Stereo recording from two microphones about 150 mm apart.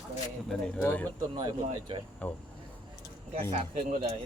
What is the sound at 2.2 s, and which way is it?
Speech, 10° left (ahead or behind).